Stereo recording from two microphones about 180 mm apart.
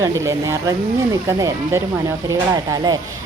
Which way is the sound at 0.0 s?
20° right (ahead or behind).